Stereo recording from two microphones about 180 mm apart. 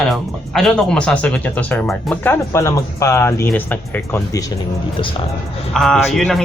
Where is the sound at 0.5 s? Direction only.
5° left (ahead or behind).